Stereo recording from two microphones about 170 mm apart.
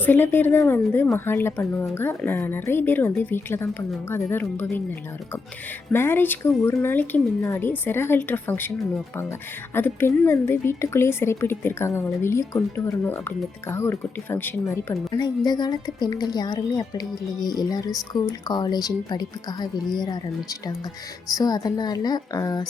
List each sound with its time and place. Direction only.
0.0 s a woman's voice: 10° left (ahead or behind)
5.9 s a woman's voice: 15° left (ahead or behind)
9.7 s a woman's voice: 15° left (ahead or behind)